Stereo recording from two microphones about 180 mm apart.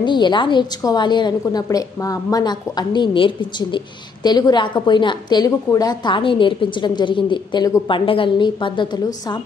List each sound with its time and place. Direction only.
0.0 s a woman's voice: 25° left (ahead or behind)